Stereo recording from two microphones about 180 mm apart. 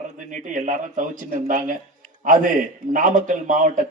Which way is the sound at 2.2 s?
45° right (ahead or behind).